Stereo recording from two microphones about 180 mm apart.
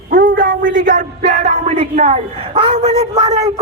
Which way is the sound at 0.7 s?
45° right (ahead or behind).